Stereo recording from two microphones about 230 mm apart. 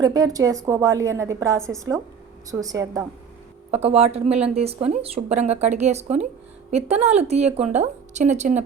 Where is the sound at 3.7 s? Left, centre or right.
Right.